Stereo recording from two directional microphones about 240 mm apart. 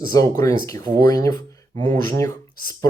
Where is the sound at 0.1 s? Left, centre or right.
Centre.